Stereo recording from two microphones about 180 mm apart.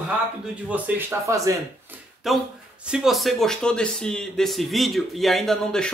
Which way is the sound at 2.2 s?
Centre (ahead or behind).